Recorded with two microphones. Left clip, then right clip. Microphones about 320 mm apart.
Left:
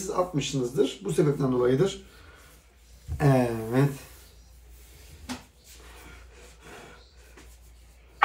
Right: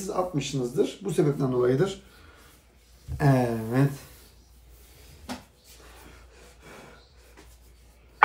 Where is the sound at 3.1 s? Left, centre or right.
Centre.